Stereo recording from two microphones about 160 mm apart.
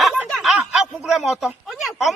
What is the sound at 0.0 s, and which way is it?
Speech, 5° right (ahead or behind).